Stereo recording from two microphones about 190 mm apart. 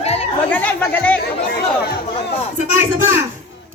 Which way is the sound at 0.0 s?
35° left (ahead or behind).